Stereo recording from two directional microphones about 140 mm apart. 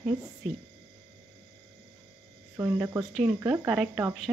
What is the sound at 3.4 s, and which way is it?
Speech, 10° right (ahead or behind).